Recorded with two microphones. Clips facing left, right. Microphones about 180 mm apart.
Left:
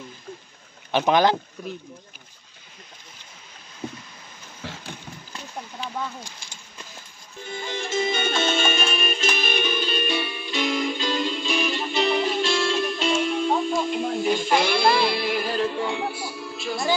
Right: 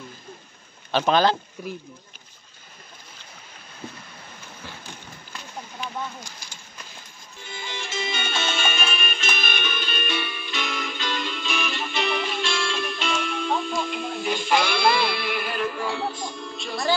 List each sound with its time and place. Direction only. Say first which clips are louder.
0.9 s speech: left 1 dB; 15° left (ahead or behind)
5.8 s a sound: even; 30° left (ahead or behind)
7.4 s music: left 5 dB; 50° left (ahead or behind); by 16.1 s 20° left (ahead or behind)
16.1 s music: even; 5° left (ahead or behind)